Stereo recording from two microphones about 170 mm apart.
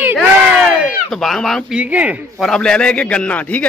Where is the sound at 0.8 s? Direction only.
Centre (ahead or behind).